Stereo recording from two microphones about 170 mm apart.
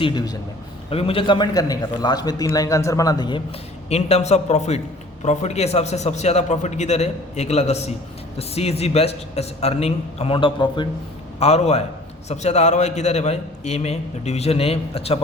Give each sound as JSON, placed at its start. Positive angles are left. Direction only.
{"t": 0.0, "sound": "a man's voice", "side_deg": 25}
{"t": 3.8, "sound": "a man's voice", "side_deg": 40}